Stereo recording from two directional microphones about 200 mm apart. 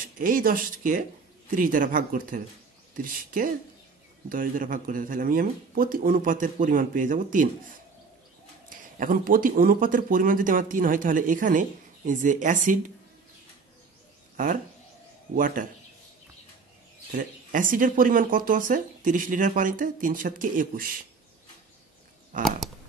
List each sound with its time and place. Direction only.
0.0 s speech: 45° right (ahead or behind)
8.6 s speech: 45° right (ahead or behind)
14.3 s a sound: 40° right (ahead or behind)
15.3 s speech: 40° right (ahead or behind)
17.1 s speech: 40° right (ahead or behind)